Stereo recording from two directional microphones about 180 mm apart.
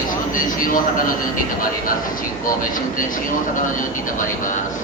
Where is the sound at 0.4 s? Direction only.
50° left (ahead or behind).